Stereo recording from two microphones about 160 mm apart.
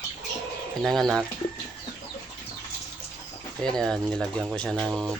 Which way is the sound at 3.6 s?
5° left (ahead or behind).